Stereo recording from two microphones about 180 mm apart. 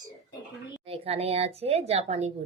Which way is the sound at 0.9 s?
35° right (ahead or behind).